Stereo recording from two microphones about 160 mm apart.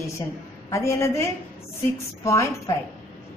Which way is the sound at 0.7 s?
20° left (ahead or behind).